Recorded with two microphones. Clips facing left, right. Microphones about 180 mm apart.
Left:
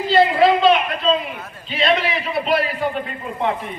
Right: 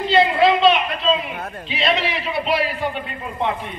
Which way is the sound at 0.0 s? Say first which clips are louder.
Left 1 dB; centre (ahead or behind).